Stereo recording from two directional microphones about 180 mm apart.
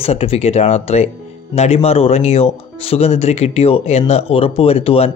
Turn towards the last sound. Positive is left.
turn(degrees=35)  # may be behind; listen again after turning